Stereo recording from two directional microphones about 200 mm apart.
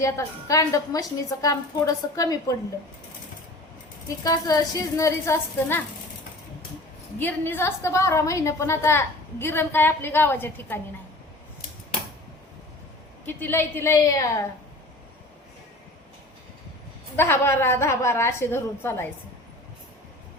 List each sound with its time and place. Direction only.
0.0 s a woman's voice: 15° left (ahead or behind)
4.2 s a woman's voice: 20° left (ahead or behind)
7.2 s a woman's voice: 10° left (ahead or behind)
13.2 s a woman's voice: 10° left (ahead or behind)
17.2 s a woman's voice: 10° left (ahead or behind)